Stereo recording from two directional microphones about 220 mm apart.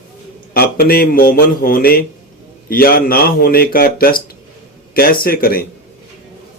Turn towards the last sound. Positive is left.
turn(degrees=45)  # may be behind; listen again after turning